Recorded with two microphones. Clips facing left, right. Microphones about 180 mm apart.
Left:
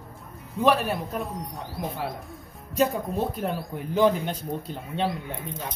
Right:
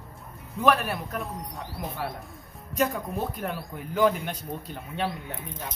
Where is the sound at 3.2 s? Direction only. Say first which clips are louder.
Left 4 dB; 30° left (ahead or behind).